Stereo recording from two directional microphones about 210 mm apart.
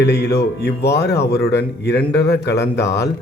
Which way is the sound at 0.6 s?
50° left (ahead or behind).